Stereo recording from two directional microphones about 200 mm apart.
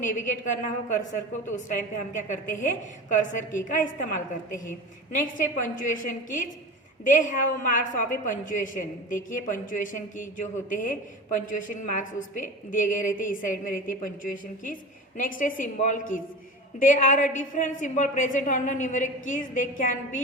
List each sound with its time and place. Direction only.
0.0 s a woman's voice: 40° left (ahead or behind)